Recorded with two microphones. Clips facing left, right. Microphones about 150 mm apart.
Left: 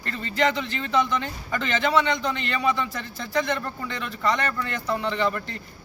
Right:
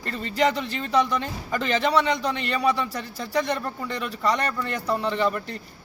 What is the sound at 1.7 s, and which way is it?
Speech, 35° right (ahead or behind).